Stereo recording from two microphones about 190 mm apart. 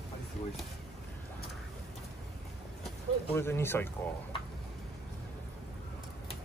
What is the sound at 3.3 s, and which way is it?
Speech, 10° left (ahead or behind).